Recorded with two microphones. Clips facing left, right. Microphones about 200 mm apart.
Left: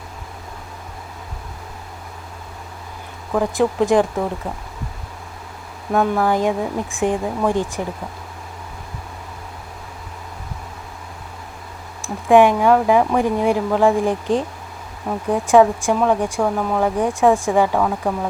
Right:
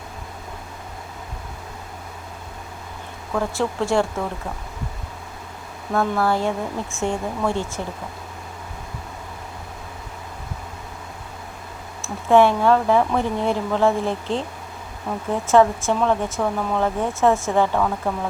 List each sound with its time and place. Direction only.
3.3 s speech: 15° left (ahead or behind)
5.9 s speech: 15° left (ahead or behind)
12.0 s speech: 15° left (ahead or behind)